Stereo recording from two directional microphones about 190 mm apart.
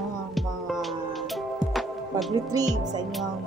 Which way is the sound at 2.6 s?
Centre (ahead or behind).